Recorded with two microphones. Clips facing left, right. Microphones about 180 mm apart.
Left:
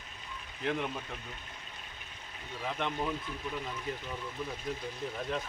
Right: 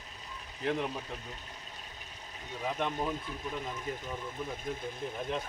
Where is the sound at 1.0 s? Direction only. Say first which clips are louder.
Right 1 dB; 35° right (ahead or behind).